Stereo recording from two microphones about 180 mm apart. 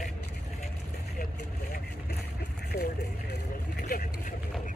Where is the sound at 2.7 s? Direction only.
20° left (ahead or behind).